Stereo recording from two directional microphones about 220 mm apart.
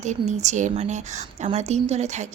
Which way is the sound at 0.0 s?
30° right (ahead or behind).